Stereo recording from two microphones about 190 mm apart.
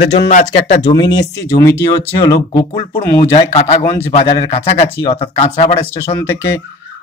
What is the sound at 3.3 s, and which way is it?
Speech, 35° left (ahead or behind).